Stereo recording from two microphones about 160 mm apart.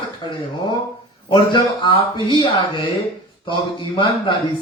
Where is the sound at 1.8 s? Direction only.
30° left (ahead or behind).